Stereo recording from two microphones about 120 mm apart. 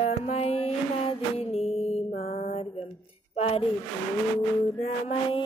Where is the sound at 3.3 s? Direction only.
60° left (ahead or behind).